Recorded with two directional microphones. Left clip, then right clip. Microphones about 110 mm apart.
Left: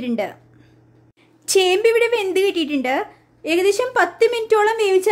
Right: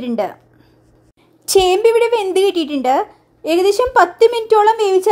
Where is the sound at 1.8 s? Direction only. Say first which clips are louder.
Right 3 dB; 10° right (ahead or behind).